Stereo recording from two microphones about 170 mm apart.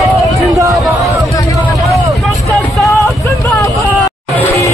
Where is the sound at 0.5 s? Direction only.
20° right (ahead or behind).